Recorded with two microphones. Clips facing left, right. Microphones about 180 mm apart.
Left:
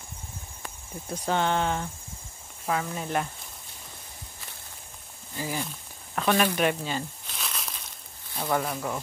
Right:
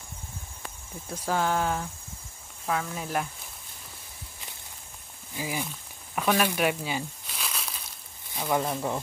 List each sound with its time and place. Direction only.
1.1 s speech: 5° right (ahead or behind)
5.3 s speech: 10° right (ahead or behind)
6.1 s a sound: 5° right (ahead or behind)
8.5 s speech: 20° right (ahead or behind)